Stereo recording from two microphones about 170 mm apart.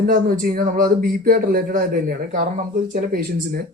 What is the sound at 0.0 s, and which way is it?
Speech, 55° right (ahead or behind).